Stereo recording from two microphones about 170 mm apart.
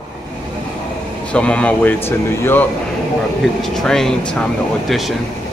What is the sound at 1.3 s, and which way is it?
Speech, 5° left (ahead or behind).